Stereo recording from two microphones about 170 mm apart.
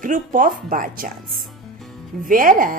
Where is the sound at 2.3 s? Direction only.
55° right (ahead or behind).